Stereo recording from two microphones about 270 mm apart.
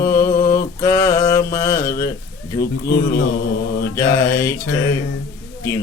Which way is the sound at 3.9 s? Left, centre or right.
Centre.